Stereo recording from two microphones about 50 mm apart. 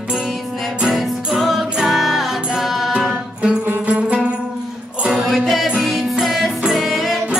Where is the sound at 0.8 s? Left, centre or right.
Centre.